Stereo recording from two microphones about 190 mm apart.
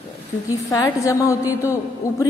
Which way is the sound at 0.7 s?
15° left (ahead or behind).